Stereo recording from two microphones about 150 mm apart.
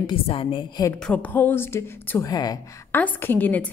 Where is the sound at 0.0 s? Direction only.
35° left (ahead or behind).